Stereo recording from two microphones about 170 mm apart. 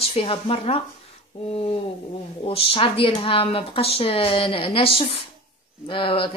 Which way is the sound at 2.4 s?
35° left (ahead or behind).